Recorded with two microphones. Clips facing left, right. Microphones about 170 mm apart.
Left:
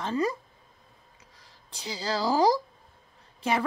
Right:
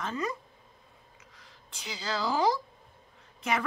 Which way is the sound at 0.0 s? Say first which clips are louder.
Left 6 dB; 30° left (ahead or behind).